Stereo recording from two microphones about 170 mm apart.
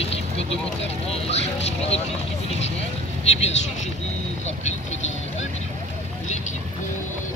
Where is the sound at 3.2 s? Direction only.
40° left (ahead or behind).